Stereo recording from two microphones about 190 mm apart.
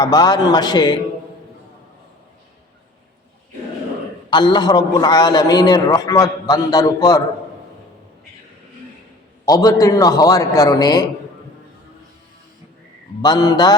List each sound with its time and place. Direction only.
0.0 s a man's voice: 20° left (ahead or behind)
4.3 s a man's voice: 25° left (ahead or behind)
9.5 s a man's voice: 20° left (ahead or behind)
13.2 s a man's voice: 20° left (ahead or behind)